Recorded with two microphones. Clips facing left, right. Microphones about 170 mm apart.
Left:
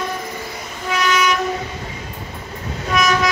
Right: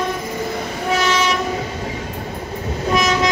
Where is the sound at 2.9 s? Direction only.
25° right (ahead or behind).